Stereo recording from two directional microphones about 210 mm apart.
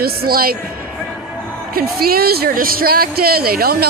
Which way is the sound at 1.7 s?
45° right (ahead or behind).